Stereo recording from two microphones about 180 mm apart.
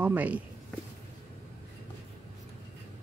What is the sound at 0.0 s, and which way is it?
Speech, 10° right (ahead or behind).